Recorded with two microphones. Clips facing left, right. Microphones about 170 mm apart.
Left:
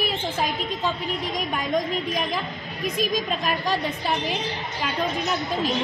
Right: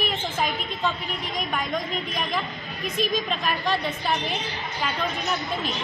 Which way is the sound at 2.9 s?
10° left (ahead or behind).